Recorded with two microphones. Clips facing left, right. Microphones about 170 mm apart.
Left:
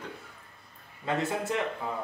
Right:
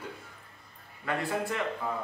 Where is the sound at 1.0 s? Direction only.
20° left (ahead or behind).